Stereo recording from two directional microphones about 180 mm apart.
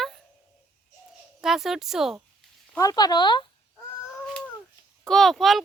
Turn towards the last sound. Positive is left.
turn(degrees=0)  # may be behind; listen again after turning